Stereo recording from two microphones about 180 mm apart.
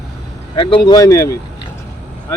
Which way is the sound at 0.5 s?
25° left (ahead or behind).